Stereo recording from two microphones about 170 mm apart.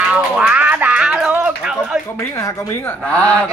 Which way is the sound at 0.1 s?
10° right (ahead or behind).